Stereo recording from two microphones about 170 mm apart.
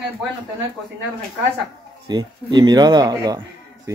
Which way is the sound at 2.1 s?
25° right (ahead or behind).